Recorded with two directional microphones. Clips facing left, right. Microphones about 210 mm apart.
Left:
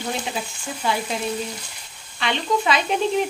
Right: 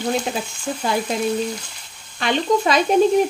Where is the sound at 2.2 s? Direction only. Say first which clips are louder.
Right 4 dB; 45° right (ahead or behind).